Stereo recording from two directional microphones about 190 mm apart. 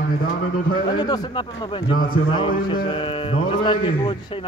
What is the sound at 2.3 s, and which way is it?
Speech, 25° left (ahead or behind).